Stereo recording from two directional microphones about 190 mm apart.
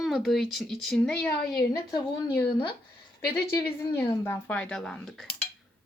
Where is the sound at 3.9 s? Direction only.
15° left (ahead or behind); by 5.2 s centre (ahead or behind).